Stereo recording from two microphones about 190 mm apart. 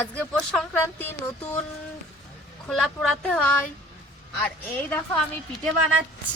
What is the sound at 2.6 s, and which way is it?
Speech, centre (ahead or behind).